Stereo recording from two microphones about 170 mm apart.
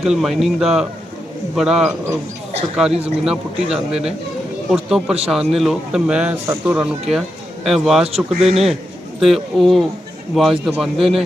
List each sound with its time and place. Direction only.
0.0 s speech: centre (ahead or behind)